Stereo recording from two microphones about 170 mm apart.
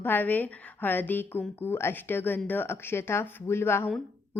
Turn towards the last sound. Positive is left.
turn(degrees=15)  # may be behind; listen again after turning